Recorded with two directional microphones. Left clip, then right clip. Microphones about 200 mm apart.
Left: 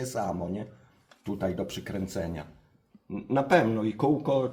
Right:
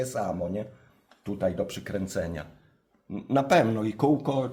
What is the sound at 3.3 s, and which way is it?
Speech, 45° right (ahead or behind).